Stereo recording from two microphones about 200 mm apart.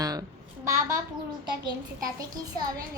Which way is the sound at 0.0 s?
20° right (ahead or behind).